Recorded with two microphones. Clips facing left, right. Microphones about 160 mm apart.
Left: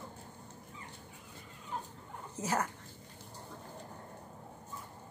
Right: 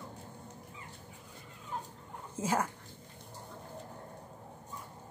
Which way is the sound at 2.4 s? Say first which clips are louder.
Right 2 dB; 10° right (ahead or behind).